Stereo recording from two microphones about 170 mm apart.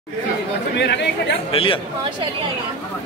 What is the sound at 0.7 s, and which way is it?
Speech, 90° left.